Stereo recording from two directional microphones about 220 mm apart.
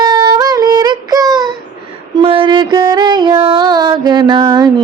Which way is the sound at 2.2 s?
25° right (ahead or behind).